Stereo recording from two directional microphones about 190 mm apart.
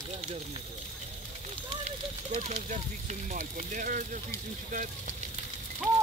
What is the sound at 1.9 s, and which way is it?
Speech, 35° right (ahead or behind).